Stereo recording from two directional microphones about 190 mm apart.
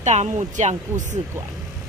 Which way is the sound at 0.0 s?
35° right (ahead or behind).